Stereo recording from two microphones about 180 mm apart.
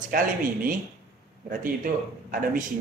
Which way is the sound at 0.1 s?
50° right (ahead or behind).